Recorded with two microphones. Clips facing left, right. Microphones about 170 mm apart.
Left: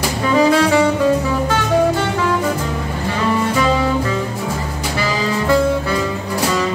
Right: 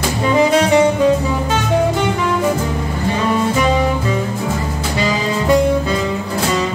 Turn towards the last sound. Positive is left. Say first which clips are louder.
# right 2 dB
turn(degrees=-20)  # may be behind; listen again after turning